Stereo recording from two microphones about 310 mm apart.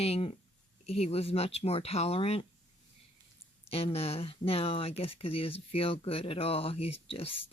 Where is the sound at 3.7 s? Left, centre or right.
Centre.